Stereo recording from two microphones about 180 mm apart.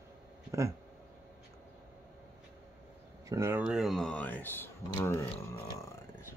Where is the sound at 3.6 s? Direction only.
5° right (ahead or behind); by 5.3 s 15° left (ahead or behind).